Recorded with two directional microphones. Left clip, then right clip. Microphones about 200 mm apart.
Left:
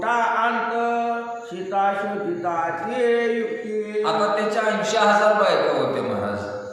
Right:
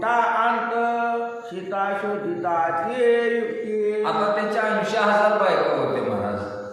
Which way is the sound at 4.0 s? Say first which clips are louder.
Left 5 dB; 10° left (ahead or behind).